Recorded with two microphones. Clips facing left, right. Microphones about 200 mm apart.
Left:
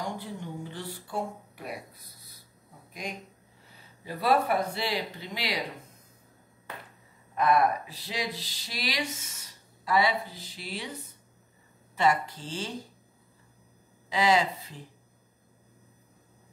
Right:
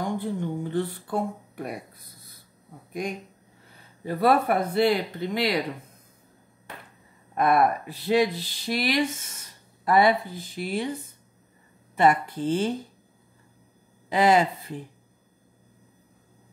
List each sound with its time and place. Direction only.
0.0 s a sound: 55° right (ahead or behind)
2.9 s speech: 50° right (ahead or behind)
7.3 s speech: 55° right (ahead or behind)
11.9 s speech: 55° right (ahead or behind)
14.0 s speech: 55° right (ahead or behind)